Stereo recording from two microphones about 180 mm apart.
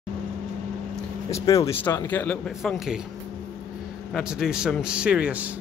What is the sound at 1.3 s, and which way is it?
Speech, 20° left (ahead or behind).